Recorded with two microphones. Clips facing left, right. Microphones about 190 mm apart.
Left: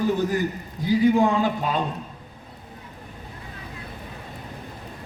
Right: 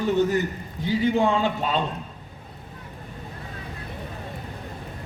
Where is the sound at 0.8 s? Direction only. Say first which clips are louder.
Left 3 dB; 25° right (ahead or behind).